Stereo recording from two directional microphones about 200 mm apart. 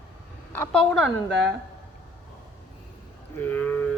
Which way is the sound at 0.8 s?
Centre (ahead or behind).